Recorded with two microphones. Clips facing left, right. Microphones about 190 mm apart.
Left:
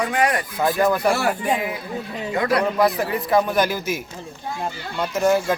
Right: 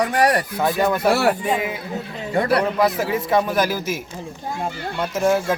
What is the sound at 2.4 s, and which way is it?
Speech, 30° right (ahead or behind).